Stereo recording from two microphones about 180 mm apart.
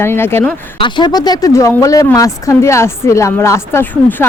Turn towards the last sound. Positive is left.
turn(degrees=10)  # may be behind; listen again after turning